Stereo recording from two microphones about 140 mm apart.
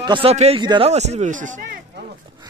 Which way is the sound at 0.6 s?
35° right (ahead or behind).